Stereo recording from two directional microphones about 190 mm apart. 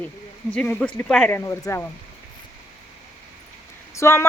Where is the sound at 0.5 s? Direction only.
5° left (ahead or behind).